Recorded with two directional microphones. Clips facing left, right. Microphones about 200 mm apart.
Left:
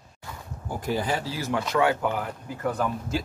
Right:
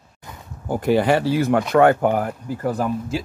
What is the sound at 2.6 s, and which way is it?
Speech, 35° right (ahead or behind).